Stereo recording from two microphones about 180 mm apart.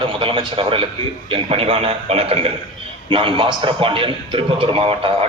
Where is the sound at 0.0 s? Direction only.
30° right (ahead or behind).